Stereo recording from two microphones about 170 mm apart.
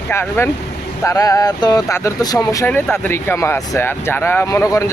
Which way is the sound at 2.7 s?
10° left (ahead or behind).